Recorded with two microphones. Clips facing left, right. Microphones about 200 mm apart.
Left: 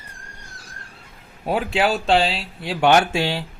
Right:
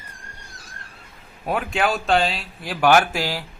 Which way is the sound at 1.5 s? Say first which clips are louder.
Left 2 dB; 30° left (ahead or behind).